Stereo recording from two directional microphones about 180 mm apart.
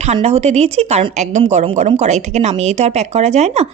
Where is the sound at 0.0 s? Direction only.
35° right (ahead or behind).